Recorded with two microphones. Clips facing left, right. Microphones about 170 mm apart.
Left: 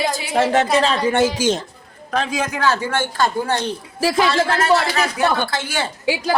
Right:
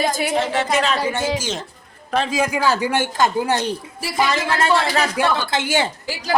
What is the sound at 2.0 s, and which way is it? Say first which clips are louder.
Speech: right 2 dB; centre (ahead or behind).